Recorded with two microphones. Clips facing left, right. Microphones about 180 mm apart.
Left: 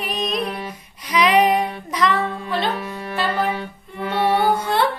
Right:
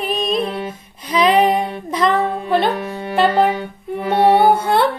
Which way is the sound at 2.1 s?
35° right (ahead or behind).